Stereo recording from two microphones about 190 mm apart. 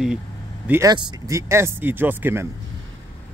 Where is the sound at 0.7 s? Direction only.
20° right (ahead or behind).